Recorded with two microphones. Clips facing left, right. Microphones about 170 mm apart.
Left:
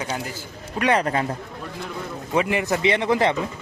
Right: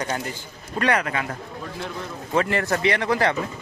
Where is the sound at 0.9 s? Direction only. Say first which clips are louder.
Left 4 dB; 35° left (ahead or behind).